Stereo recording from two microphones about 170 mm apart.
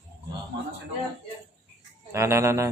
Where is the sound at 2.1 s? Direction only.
15° right (ahead or behind).